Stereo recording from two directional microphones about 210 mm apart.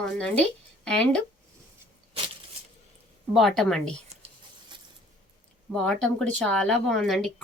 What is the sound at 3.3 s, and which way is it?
Speech, centre (ahead or behind).